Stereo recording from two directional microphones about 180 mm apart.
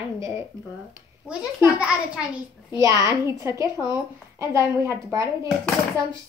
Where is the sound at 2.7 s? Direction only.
20° right (ahead or behind).